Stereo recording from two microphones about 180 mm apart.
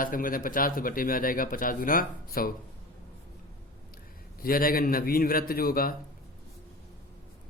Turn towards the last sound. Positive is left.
turn(degrees=55)  # may be behind; listen again after turning